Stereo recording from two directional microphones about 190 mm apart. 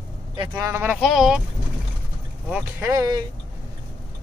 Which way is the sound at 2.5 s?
10° right (ahead or behind).